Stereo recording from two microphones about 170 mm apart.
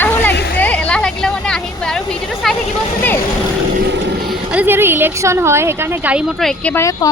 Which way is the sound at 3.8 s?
90° right.